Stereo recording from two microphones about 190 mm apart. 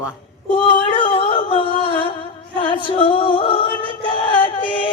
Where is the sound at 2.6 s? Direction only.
25° left (ahead or behind).